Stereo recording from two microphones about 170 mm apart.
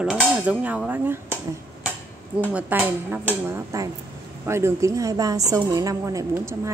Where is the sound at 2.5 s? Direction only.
10° right (ahead or behind).